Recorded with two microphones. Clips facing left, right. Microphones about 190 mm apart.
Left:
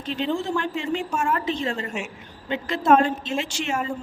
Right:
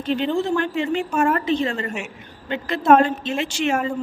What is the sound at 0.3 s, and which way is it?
A man's voice, 60° right (ahead or behind).